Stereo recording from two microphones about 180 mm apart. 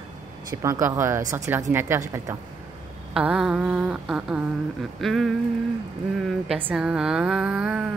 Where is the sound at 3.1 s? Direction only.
5° right (ahead or behind).